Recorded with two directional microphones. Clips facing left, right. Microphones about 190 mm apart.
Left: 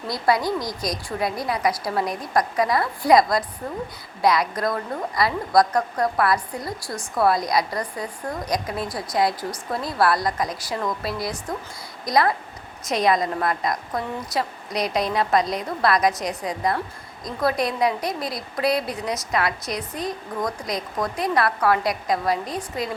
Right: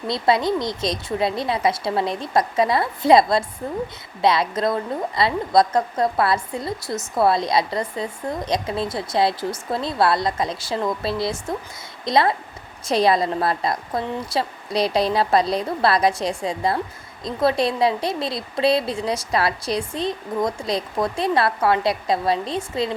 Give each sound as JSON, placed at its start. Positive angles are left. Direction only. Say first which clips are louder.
{"t": 0.1, "sound": "a woman's voice", "louder": "right 2 dB", "side_deg": -25}